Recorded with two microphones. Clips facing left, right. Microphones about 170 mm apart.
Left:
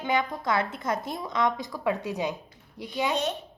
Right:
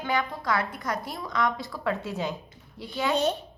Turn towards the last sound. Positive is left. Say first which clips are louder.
# even
turn(degrees=15)  # may be behind; listen again after turning